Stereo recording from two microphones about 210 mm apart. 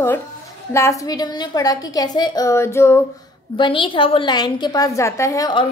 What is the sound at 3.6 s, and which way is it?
A woman's voice, 25° left (ahead or behind).